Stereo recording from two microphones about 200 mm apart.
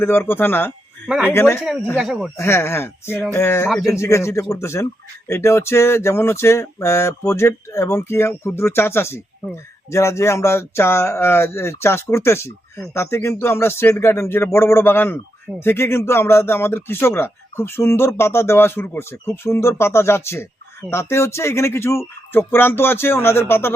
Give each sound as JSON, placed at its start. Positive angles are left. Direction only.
{"t": 0.0, "sound": "speech", "side_deg": 10}
{"t": 1.0, "sound": "speech", "side_deg": -5}
{"t": 1.3, "sound": "speech", "side_deg": 10}
{"t": 2.0, "sound": "speech", "side_deg": 0}
{"t": 2.4, "sound": "speech", "side_deg": 10}